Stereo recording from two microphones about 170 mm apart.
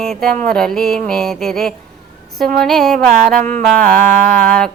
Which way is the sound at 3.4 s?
45° right (ahead or behind).